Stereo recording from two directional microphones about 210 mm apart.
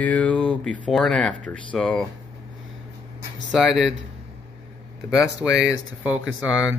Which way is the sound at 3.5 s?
Centre (ahead or behind).